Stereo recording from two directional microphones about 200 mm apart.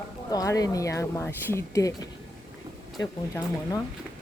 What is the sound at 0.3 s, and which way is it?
Speech, 20° left (ahead or behind).